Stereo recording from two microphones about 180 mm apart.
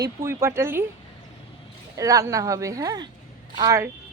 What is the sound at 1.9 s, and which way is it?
A woman's voice, 20° right (ahead or behind).